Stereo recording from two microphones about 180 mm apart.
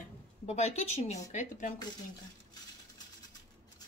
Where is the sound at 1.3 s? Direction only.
45° left (ahead or behind).